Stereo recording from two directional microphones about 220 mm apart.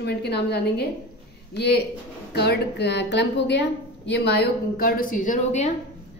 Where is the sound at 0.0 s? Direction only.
50° left (ahead or behind).